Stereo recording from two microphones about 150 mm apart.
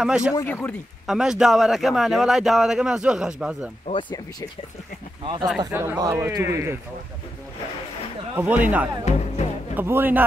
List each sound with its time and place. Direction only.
0.0 s a man's voice: 5° right (ahead or behind)
0.4 s speech: 15° left (ahead or behind)
1.0 s a man's voice: 5° right (ahead or behind)
3.8 s speech: 30° left (ahead or behind)
5.2 s speech: 35° right (ahead or behind)
5.7 s a man's voice: 15° right (ahead or behind)
8.4 s speech: 10° right (ahead or behind)